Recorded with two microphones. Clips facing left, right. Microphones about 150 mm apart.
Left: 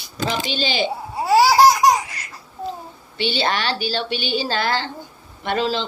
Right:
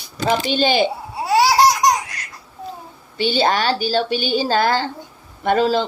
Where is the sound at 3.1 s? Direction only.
45° right (ahead or behind).